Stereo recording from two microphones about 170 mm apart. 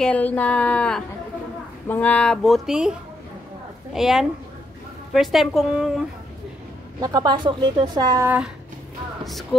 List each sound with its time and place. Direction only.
0.0 s speech: 5° left (ahead or behind)
7.0 s speech: 20° right (ahead or behind)
9.2 s music: centre (ahead or behind)